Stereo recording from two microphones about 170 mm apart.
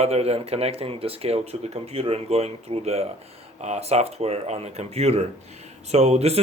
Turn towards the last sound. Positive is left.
turn(degrees=-40)  # may be behind; listen again after turning